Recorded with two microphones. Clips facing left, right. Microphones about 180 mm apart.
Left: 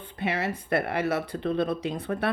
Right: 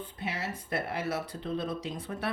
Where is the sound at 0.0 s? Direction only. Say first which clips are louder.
Left 7 dB; 65° left (ahead or behind).